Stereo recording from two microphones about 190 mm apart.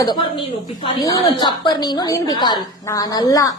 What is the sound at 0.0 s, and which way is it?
A woman's voice, 25° left (ahead or behind).